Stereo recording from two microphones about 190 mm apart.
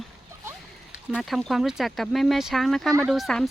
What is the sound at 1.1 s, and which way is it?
Speech, centre (ahead or behind).